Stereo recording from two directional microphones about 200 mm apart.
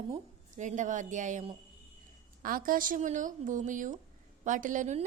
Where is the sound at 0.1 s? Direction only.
35° right (ahead or behind).